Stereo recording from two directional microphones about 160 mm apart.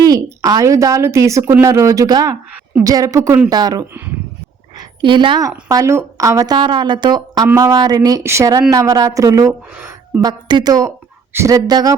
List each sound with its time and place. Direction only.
0.0 s a woman's voice: 20° right (ahead or behind)
5.6 s a woman's voice: 20° right (ahead or behind)